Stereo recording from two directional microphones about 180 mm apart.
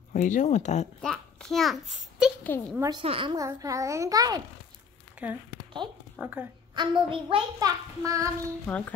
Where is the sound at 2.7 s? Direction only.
20° right (ahead or behind).